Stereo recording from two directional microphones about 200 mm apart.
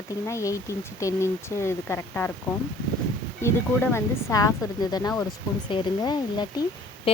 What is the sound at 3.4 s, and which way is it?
Speech, 10° left (ahead or behind).